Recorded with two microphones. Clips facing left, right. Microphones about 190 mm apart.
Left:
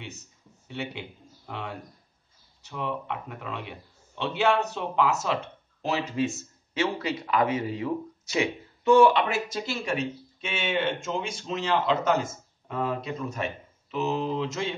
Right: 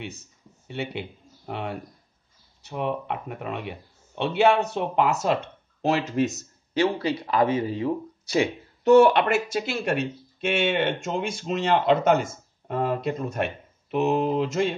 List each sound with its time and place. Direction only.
0.7 s speech: 60° right (ahead or behind)
6.2 s speech: 40° right (ahead or behind)
9.0 s speech: 60° right (ahead or behind)